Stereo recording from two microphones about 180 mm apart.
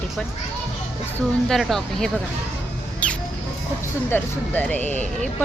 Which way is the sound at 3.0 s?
5° left (ahead or behind).